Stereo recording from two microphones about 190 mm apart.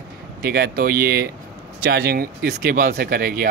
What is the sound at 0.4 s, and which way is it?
Speech, 50° right (ahead or behind).